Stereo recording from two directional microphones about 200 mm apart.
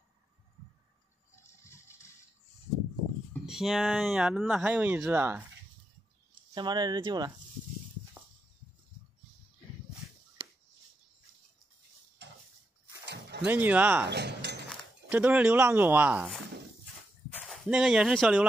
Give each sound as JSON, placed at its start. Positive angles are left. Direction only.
{"t": 1.5, "sound": "music", "side_deg": 15}
{"t": 3.4, "sound": "speech", "side_deg": 0}
{"t": 6.5, "sound": "speech", "side_deg": -20}
{"t": 12.2, "sound": "a sound", "side_deg": -60}
{"t": 13.0, "sound": "dog", "side_deg": -60}
{"t": 13.5, "sound": "speech", "side_deg": -10}
{"t": 14.0, "sound": "keys jangling", "side_deg": -55}
{"t": 14.7, "sound": "speech", "side_deg": -5}
{"t": 17.5, "sound": "speech", "side_deg": -5}